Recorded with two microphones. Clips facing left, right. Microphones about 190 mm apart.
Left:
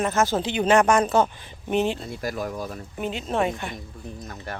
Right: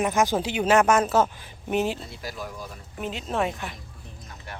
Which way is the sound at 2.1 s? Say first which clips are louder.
Left 7 dB; 50° left (ahead or behind).